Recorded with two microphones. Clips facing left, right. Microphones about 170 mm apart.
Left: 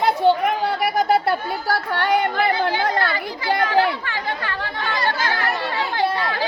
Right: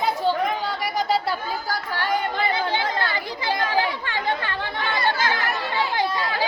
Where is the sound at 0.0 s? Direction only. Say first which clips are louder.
Left 5 dB; 65° left (ahead or behind).